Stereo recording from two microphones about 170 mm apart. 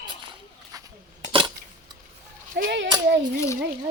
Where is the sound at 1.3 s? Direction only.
30° right (ahead or behind).